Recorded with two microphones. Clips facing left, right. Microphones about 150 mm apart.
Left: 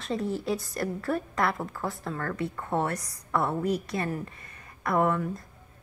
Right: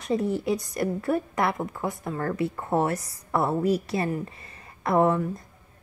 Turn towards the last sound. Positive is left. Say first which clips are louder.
# right 4 dB
turn(degrees=-25)  # may be behind; listen again after turning